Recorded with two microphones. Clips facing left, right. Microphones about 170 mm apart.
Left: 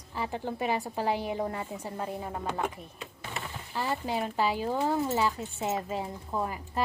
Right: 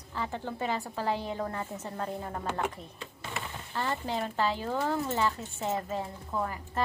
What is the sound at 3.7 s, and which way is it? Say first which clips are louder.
Speech: left 1 dB; 10° left (ahead or behind).